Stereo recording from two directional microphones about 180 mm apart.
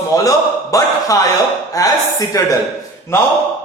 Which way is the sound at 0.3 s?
20° left (ahead or behind).